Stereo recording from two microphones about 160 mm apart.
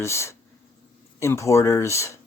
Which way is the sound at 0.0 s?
15° left (ahead or behind).